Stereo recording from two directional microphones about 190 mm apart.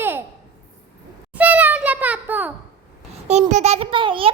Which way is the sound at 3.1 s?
35° right (ahead or behind).